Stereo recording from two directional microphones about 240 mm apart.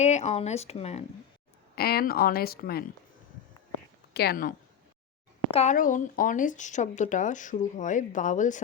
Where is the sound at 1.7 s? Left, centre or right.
Left.